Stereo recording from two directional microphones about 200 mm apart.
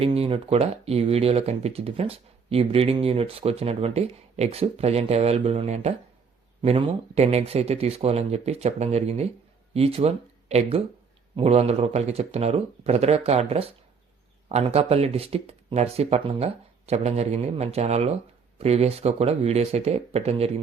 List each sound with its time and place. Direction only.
0.0 s speech: 30° right (ahead or behind)